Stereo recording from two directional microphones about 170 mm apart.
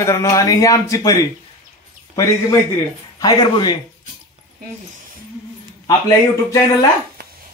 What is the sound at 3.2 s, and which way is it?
Speech, 25° left (ahead or behind).